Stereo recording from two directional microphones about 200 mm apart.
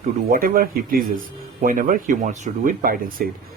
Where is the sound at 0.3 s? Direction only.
45° right (ahead or behind).